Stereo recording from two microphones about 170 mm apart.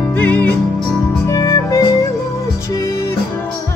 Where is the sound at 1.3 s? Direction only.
20° left (ahead or behind).